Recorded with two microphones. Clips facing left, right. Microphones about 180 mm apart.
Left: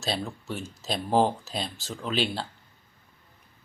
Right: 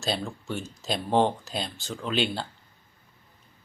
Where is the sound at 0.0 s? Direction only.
Centre (ahead or behind).